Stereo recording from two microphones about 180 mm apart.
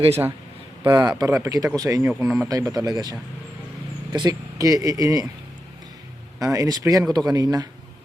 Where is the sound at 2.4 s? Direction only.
15° right (ahead or behind).